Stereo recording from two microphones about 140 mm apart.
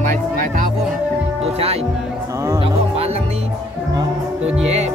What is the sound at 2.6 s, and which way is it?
Music, 45° right (ahead or behind).